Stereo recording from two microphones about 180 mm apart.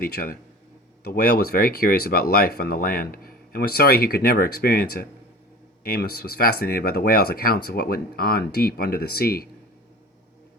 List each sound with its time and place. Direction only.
0.0 s speech: 55° left (ahead or behind)